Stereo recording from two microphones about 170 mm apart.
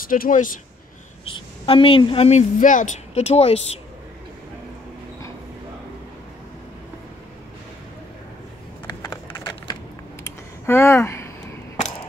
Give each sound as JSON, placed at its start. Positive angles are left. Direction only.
{"t": 0.1, "sound": "speech", "side_deg": 50}
{"t": 1.2, "sound": "a woman's voice", "side_deg": 30}
{"t": 8.8, "sound": "typing", "side_deg": 20}
{"t": 10.2, "sound": "a sound", "side_deg": 15}